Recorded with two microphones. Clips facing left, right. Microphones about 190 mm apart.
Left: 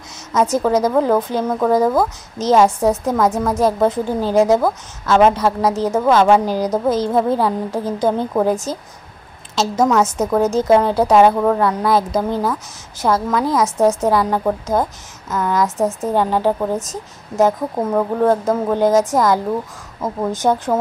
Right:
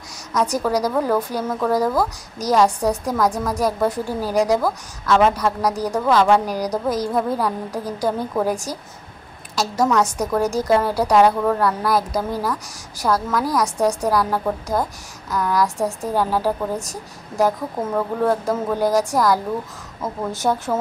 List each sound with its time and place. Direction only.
0.3 s a woman's voice: 25° left (ahead or behind)